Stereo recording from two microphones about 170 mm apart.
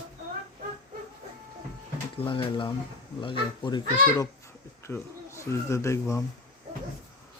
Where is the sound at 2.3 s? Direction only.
30° left (ahead or behind).